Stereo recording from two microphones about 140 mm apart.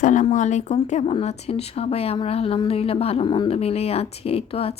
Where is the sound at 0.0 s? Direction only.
65° left (ahead or behind).